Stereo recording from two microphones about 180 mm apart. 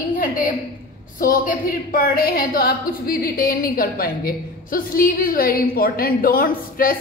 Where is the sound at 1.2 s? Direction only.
50° left (ahead or behind).